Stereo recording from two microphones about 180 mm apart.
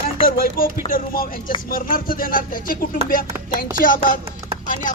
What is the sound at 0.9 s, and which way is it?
Music, 50° left (ahead or behind).